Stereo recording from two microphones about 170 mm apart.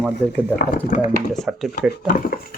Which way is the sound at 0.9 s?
45° left (ahead or behind).